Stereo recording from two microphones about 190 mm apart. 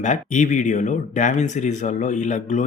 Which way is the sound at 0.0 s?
40° left (ahead or behind).